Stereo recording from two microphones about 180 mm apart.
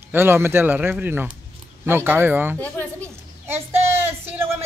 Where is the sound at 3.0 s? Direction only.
15° right (ahead or behind).